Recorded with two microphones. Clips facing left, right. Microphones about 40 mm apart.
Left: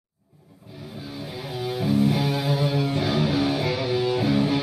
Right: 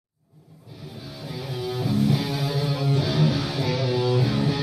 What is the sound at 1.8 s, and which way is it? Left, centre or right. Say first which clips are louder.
Music: left 2 dB; left.